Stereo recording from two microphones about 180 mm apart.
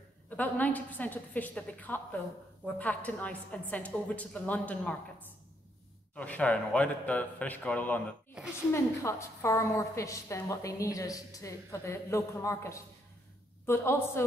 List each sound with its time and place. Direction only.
0.4 s a woman's voice: 10° left (ahead or behind)
6.1 s a woman's voice: 10° left (ahead or behind)